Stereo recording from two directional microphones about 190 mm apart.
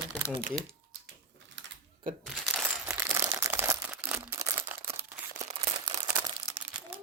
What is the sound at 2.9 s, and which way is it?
Crumpling, 15° right (ahead or behind).